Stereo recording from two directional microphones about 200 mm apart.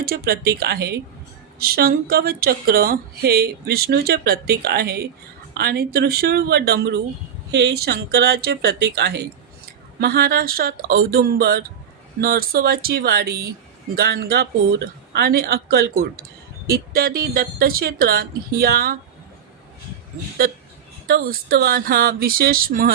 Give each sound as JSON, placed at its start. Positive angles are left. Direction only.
{"t": 0.0, "sound": "a woman's voice", "side_deg": -50}
{"t": 20.4, "sound": "a woman's voice", "side_deg": -50}